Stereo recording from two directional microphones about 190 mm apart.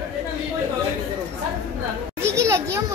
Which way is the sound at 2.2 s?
15° right (ahead or behind).